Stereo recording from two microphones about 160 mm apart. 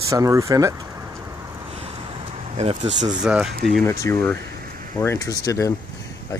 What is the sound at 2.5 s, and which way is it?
Speech, 40° right (ahead or behind).